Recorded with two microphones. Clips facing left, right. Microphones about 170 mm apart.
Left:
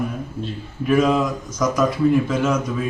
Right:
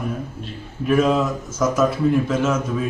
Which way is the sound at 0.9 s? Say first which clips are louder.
Even; 5° left (ahead or behind).